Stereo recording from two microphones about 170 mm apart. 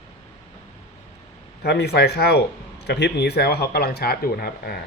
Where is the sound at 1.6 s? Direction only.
75° left (ahead or behind).